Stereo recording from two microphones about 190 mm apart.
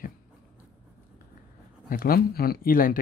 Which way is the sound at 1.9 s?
50° left (ahead or behind).